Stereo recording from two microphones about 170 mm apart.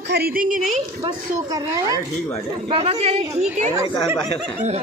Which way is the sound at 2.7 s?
35° right (ahead or behind).